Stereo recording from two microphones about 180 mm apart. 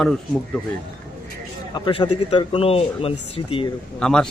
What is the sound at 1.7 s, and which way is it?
Speech, 25° left (ahead or behind).